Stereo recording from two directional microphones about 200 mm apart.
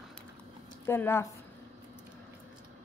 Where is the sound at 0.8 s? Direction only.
10° left (ahead or behind).